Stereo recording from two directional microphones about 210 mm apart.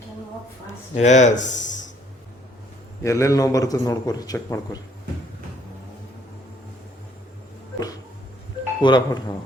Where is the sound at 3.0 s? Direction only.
15° left (ahead or behind).